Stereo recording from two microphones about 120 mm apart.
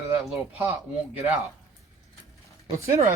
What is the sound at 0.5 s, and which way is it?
Speech, 15° right (ahead or behind).